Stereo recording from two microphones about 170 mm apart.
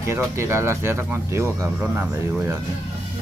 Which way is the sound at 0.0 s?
15° right (ahead or behind).